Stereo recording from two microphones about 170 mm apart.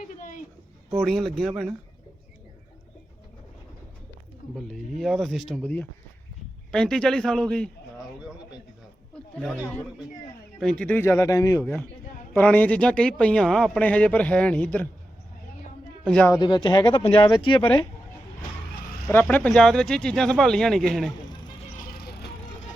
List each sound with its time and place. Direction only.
0.0 s a sound: 50° left (ahead or behind)
0.9 s speech: centre (ahead or behind)
4.5 s speech: centre (ahead or behind)
9.6 s speech: 15° left (ahead or behind)
16.0 s speech: 5° left (ahead or behind)
16.3 s speech: 25° left (ahead or behind)
19.3 s speech: 10° left (ahead or behind)
21.9 s vehicle: 70° left (ahead or behind)